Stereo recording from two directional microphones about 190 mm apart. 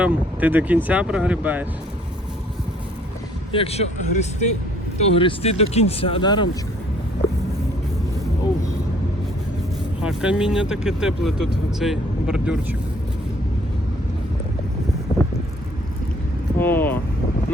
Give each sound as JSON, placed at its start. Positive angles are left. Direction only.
{"t": 0.0, "sound": "speech", "side_deg": -10}
{"t": 3.5, "sound": "speech", "side_deg": 30}
{"t": 10.0, "sound": "speech", "side_deg": -5}
{"t": 16.6, "sound": "vehicle", "side_deg": 10}